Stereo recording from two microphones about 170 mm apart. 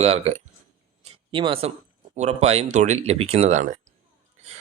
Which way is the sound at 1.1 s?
30° right (ahead or behind).